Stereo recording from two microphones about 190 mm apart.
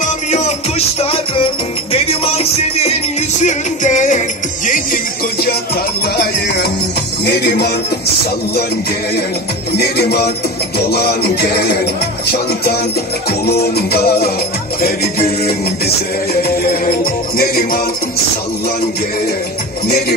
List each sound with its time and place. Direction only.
0.0 s music: 40° left (ahead or behind); by 7.7 s 60° left (ahead or behind)
9.8 s music: 55° left (ahead or behind)